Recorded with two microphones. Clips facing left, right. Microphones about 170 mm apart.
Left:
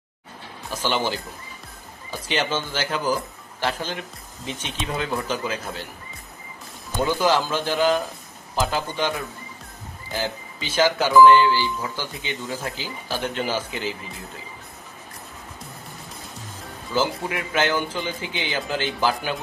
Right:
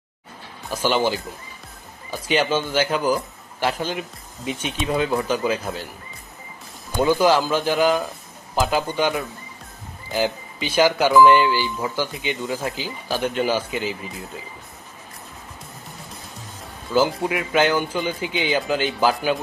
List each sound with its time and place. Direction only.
0.7 s speech: 15° right (ahead or behind)
7.0 s speech: 15° right (ahead or behind)
10.1 s speech: 15° right (ahead or behind)
16.9 s speech: 20° right (ahead or behind)